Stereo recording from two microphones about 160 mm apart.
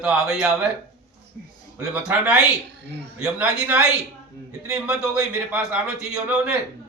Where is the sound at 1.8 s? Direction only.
5° right (ahead or behind).